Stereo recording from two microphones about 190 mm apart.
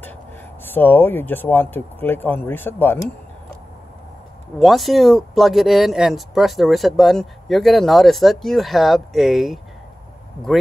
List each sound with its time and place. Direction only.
0.7 s speech: 10° left (ahead or behind)
4.6 s speech: centre (ahead or behind)